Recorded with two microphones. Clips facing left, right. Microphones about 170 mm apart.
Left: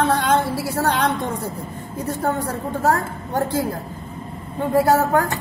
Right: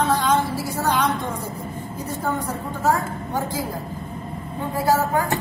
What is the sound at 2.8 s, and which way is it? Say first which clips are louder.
Music: left 1 dB; 60° left (ahead or behind).